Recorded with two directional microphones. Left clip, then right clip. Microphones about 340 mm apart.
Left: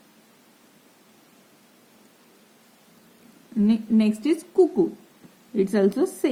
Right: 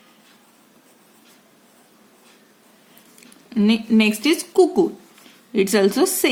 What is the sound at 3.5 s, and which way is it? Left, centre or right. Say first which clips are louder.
Speech: right 5 dB; centre.